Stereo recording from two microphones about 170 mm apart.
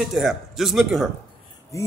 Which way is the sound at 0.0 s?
Centre (ahead or behind).